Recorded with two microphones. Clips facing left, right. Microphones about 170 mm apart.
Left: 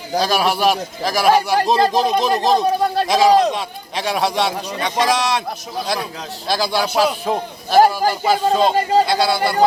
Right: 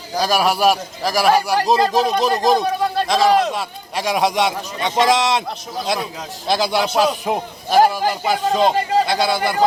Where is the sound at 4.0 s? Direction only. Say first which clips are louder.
Right 1 dB; 15° right (ahead or behind).